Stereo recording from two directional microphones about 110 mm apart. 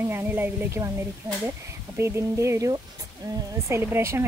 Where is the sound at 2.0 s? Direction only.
25° right (ahead or behind).